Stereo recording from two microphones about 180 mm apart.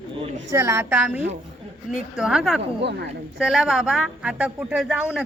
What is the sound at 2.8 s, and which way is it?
Speech, 70° right (ahead or behind).